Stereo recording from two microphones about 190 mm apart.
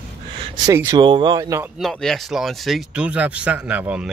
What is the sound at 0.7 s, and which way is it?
Speech, 15° right (ahead or behind).